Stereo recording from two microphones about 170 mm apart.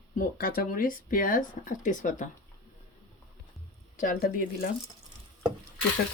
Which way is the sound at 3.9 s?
55° left (ahead or behind).